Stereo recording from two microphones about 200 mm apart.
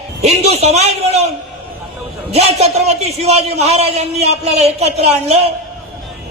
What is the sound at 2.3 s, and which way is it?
A man's voice, 30° right (ahead or behind).